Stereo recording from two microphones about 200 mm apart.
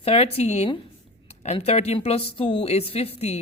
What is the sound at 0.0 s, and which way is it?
A woman's voice, 30° left (ahead or behind).